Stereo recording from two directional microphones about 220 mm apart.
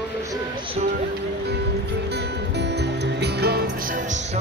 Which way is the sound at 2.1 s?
50° right (ahead or behind).